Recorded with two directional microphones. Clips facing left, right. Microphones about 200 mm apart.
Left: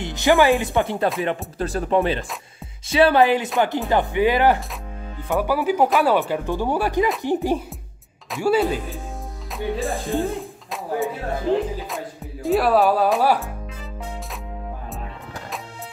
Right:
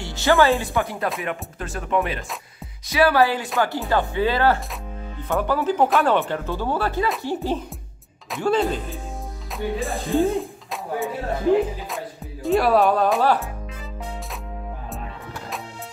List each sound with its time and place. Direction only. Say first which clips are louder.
0.0 s speech: left 1 dB; 15° left (ahead or behind); by 6.1 s centre (ahead or behind)
6.1 s speech: left 2 dB; 15° left (ahead or behind)
9.6 s music: left 1 dB; centre (ahead or behind)
12.4 s speech: even; centre (ahead or behind)